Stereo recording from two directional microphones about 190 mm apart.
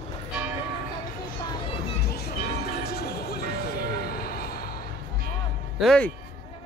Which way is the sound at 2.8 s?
55° left (ahead or behind).